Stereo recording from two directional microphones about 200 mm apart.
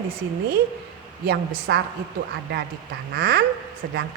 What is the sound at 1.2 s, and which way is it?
Speech, 55° right (ahead or behind).